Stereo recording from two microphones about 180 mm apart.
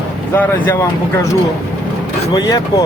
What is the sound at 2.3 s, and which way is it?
Speech, 20° left (ahead or behind).